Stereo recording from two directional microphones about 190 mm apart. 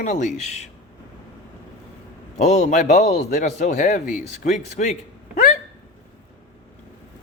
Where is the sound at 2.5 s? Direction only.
40° left (ahead or behind).